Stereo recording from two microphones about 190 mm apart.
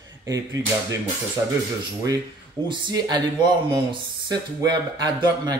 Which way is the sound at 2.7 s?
20° right (ahead or behind).